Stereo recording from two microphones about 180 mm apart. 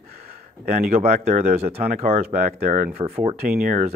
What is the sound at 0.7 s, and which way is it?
Speech, 35° right (ahead or behind).